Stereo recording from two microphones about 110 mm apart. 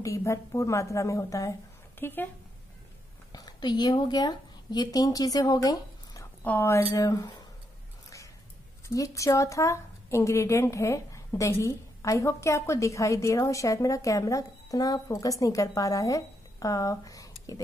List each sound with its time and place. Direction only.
0.0 s a woman's voice: 30° left (ahead or behind)
2.0 s a woman's voice: 20° left (ahead or behind)
3.3 s a woman's voice: 35° left (ahead or behind)
6.4 s a woman's voice: 20° left (ahead or behind)
7.0 s speech: 35° left (ahead or behind)
8.8 s a woman's voice: 30° left (ahead or behind)